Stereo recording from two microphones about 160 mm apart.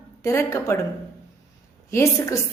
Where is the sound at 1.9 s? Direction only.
20° left (ahead or behind).